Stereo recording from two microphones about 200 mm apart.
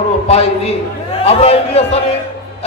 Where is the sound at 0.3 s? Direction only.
30° left (ahead or behind).